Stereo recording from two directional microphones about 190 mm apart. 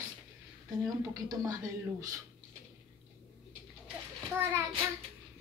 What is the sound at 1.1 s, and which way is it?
Speech, 20° right (ahead or behind).